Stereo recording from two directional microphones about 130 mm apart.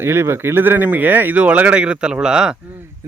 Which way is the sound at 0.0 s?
20° right (ahead or behind).